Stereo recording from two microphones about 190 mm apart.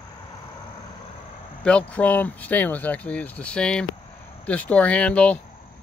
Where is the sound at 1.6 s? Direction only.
5° left (ahead or behind).